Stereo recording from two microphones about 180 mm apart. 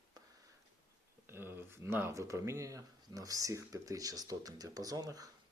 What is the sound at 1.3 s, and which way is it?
Speech, 10° right (ahead or behind).